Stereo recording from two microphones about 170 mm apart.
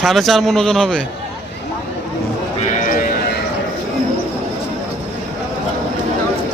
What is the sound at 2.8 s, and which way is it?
Sheep, 50° left (ahead or behind).